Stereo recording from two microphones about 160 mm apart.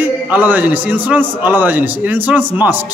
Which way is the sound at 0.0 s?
10° right (ahead or behind).